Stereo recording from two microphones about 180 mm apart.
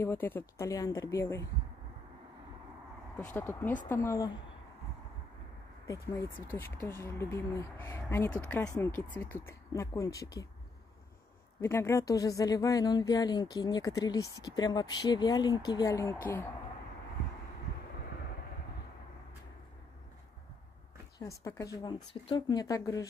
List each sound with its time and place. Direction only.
0.0 s speech: 10° left (ahead or behind)
3.3 s speech: 10° left (ahead or behind)
5.9 s speech: 15° left (ahead or behind)
11.6 s speech: 15° left (ahead or behind)
21.2 s speech: 15° left (ahead or behind)